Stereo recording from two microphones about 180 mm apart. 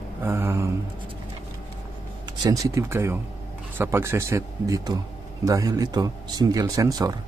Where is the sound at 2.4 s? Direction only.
20° right (ahead or behind).